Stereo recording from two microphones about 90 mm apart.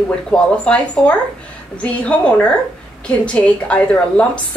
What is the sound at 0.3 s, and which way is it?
A woman's voice, 10° left (ahead or behind).